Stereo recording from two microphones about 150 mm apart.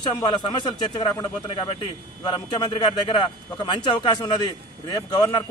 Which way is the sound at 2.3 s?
30° left (ahead or behind).